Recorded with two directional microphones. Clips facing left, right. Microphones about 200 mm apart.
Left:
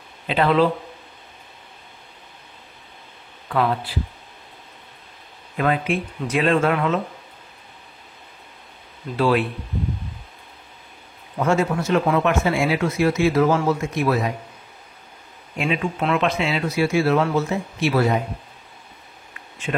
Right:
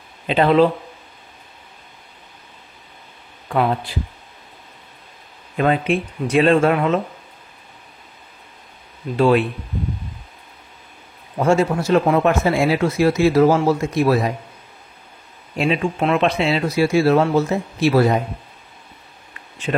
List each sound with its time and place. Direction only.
0.3 s speech: 25° right (ahead or behind)
3.4 s speech: 25° right (ahead or behind)
5.6 s speech: 25° right (ahead or behind)
9.1 s speech: 25° right (ahead or behind)
11.3 s speech: 30° right (ahead or behind)
15.5 s speech: 30° right (ahead or behind)